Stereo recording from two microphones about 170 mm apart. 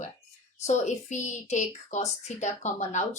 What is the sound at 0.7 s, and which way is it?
A woman's voice, 45° left (ahead or behind).